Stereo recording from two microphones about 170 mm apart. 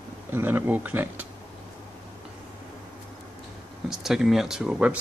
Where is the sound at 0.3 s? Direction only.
10° right (ahead or behind).